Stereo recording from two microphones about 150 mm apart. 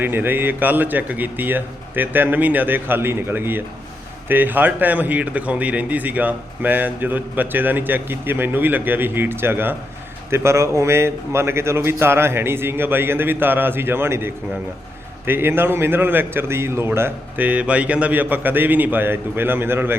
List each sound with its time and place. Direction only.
0.0 s a man's voice: 15° right (ahead or behind)